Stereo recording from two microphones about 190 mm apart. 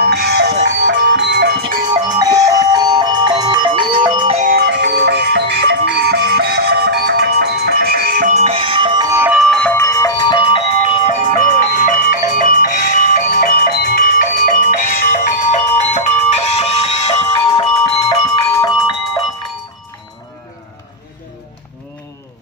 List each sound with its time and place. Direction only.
0.0 s music: 60° right (ahead or behind)
2.0 s music: 20° right (ahead or behind)
4.4 s music: 55° right (ahead or behind); by 9.3 s 20° right (ahead or behind)
9.3 s music: centre (ahead or behind); by 19.2 s 25° left (ahead or behind)